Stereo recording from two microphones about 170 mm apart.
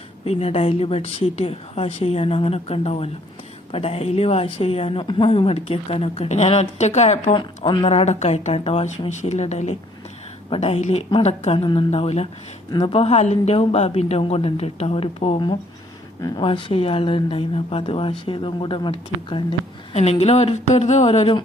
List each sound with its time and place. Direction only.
0.3 s speech: 35° left (ahead or behind)
7.3 s speech: 30° left (ahead or behind)